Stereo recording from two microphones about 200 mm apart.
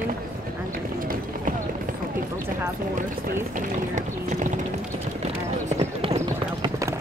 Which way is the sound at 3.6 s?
40° right (ahead or behind).